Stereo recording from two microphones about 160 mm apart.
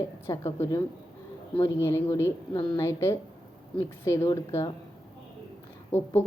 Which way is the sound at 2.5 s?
30° left (ahead or behind).